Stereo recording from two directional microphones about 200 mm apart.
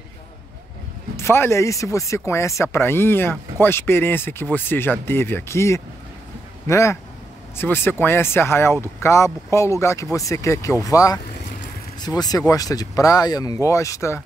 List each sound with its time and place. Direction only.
1.1 s speech: 10° left (ahead or behind)